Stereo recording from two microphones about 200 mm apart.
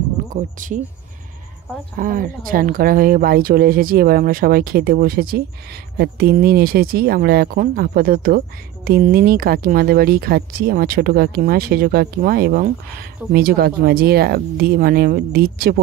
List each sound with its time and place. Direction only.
0.3 s speech: 40° right (ahead or behind)
2.0 s speech: 45° right (ahead or behind)